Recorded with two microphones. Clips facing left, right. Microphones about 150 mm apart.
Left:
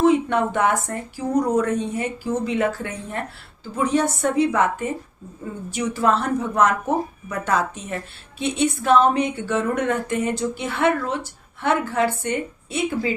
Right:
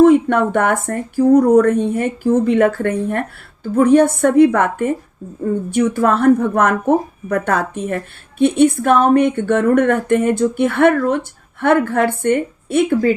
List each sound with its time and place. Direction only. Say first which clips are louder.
0.0 s speech: right 7 dB; 55° right (ahead or behind)